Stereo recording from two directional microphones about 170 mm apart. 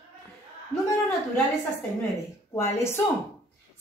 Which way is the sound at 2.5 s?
15° left (ahead or behind).